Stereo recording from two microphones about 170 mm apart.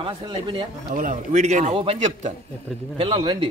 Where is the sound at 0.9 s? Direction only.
45° right (ahead or behind); by 3.4 s 30° right (ahead or behind).